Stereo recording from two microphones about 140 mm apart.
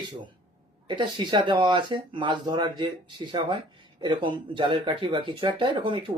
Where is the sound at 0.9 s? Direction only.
35° right (ahead or behind).